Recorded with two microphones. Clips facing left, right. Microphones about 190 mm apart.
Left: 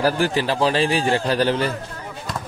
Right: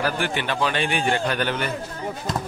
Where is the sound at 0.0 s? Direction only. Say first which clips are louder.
Left 5 dB; 35° left (ahead or behind).